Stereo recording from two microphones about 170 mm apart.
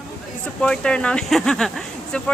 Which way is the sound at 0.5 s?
5° left (ahead or behind).